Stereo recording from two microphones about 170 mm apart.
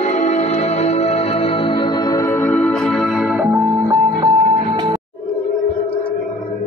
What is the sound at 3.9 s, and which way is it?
Music, 25° right (ahead or behind).